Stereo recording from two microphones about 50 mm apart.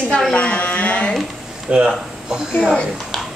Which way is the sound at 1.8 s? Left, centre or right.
Centre.